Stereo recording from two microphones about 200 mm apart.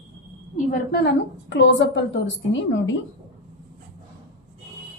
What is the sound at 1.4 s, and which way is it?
A woman's voice, 65° left (ahead or behind).